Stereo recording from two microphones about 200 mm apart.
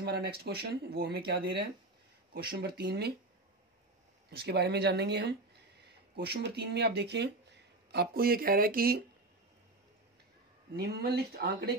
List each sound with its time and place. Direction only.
0.0 s speech: 55° right (ahead or behind)
4.4 s speech: 55° right (ahead or behind)
10.8 s speech: 50° right (ahead or behind)